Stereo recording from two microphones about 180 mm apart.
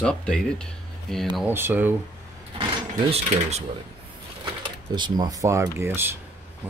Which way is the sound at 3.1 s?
35° right (ahead or behind).